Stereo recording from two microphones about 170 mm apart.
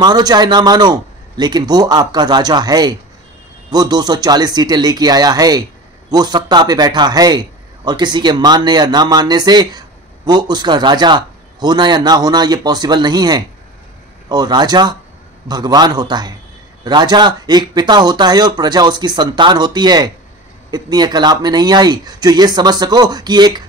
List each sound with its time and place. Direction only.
0.0 s speech: 25° right (ahead or behind)